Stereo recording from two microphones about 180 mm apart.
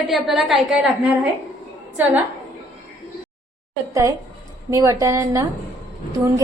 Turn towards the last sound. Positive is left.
turn(degrees=-15)  # may be behind; listen again after turning